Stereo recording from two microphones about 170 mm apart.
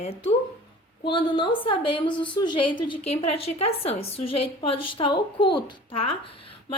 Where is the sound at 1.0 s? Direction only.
30° left (ahead or behind).